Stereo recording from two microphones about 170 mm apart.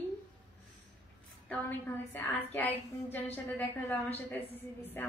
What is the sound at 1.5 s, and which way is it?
A woman's voice, 10° left (ahead or behind).